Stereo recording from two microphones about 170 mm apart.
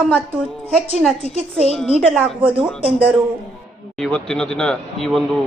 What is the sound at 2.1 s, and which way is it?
Speech, 10° right (ahead or behind).